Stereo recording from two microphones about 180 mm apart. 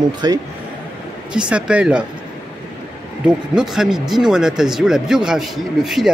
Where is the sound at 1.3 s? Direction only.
5° right (ahead or behind).